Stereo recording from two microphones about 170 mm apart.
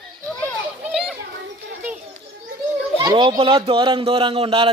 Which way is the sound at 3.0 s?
25° right (ahead or behind).